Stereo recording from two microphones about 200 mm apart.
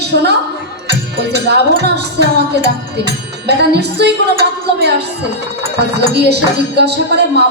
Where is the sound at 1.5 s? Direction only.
55° right (ahead or behind).